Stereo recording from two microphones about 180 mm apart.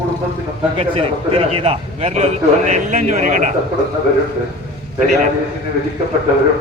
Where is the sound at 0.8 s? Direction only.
30° right (ahead or behind).